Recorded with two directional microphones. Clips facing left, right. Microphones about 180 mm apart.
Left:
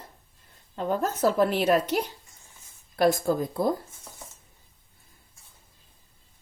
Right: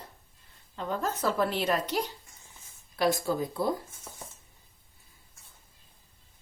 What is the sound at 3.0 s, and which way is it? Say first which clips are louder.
Speech: left 4 dB; 50° left (ahead or behind).